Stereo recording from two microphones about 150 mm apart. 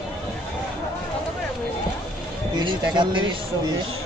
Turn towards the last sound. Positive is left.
turn(degrees=-35)  # may be behind; listen again after turning